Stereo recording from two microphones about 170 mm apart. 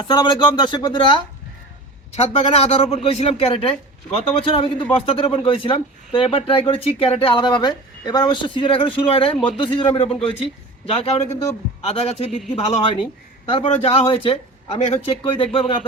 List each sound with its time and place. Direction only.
0.0 s a woman's voice: 25° left (ahead or behind)